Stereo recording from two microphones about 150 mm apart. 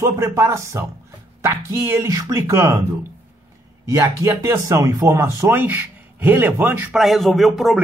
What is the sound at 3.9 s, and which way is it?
Speech, 20° right (ahead or behind).